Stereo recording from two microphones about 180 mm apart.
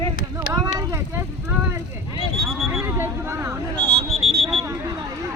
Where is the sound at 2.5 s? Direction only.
Centre (ahead or behind).